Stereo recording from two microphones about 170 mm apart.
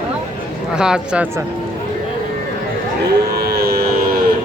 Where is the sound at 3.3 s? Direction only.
65° right (ahead or behind).